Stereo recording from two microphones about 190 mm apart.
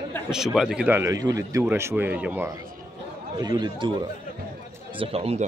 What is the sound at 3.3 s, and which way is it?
Speech, 20° right (ahead or behind).